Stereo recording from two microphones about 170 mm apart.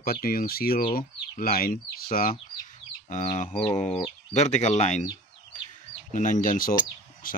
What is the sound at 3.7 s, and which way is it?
Speech, 45° left (ahead or behind).